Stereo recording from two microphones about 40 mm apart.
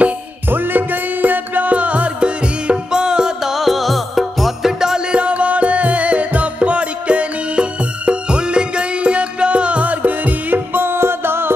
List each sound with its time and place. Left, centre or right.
0.5 s music: right; by 3.5 s centre
3.5 s music: centre
4.7 s music: centre
5.1 s music: right
10.7 s music: right